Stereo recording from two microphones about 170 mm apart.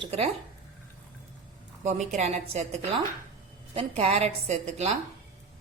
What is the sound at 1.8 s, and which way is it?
Speech, 45° right (ahead or behind).